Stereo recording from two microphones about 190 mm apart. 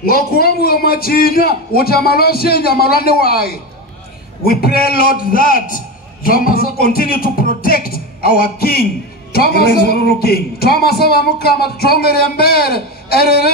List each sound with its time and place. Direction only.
0.0 s a man's voice: 50° left (ahead or behind)